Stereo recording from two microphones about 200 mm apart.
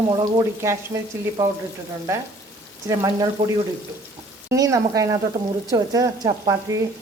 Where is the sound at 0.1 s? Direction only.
20° right (ahead or behind).